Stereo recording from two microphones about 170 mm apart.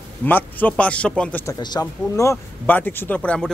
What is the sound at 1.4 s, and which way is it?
Speech, 25° left (ahead or behind).